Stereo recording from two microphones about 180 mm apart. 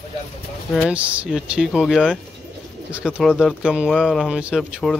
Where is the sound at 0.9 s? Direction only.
10° right (ahead or behind).